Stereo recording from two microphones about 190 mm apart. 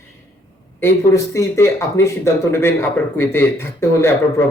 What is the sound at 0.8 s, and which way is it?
Speech, 15° left (ahead or behind).